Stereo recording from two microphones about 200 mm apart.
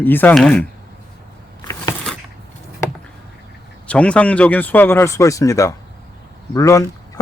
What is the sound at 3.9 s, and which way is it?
Speech, 5° left (ahead or behind).